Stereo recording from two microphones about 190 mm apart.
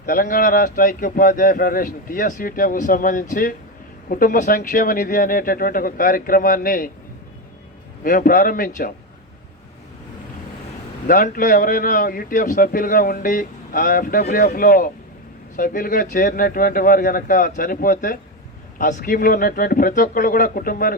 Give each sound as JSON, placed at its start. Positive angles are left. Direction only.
{"t": 0.0, "sound": "a man's voice", "side_deg": 45}
{"t": 8.0, "sound": "a man's voice", "side_deg": 45}
{"t": 11.0, "sound": "a man's voice", "side_deg": 45}